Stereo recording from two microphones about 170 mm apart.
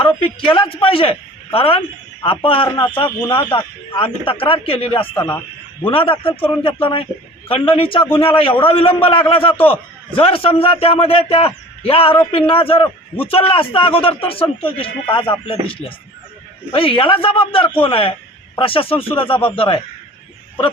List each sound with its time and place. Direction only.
0.2 s a man's voice: 30° left (ahead or behind)
5.1 s speech: 15° left (ahead or behind)
5.8 s a man's voice: 30° left (ahead or behind)